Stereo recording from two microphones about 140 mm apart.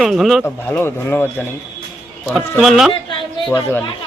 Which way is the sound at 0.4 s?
15° left (ahead or behind).